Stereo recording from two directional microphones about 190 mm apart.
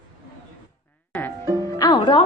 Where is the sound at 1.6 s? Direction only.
15° left (ahead or behind).